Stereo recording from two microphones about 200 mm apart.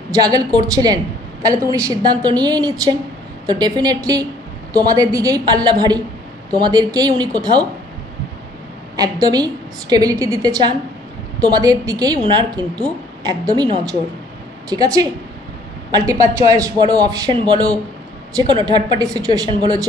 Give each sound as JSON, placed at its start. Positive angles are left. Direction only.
{"t": 0.1, "sound": "a woman's voice", "side_deg": -20}
{"t": 8.9, "sound": "a woman's voice", "side_deg": -20}
{"t": 15.9, "sound": "a woman's voice", "side_deg": -15}